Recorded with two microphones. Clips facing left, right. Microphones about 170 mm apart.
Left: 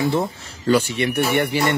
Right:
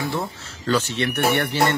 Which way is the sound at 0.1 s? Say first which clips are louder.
Left 5 dB; 15° left (ahead or behind).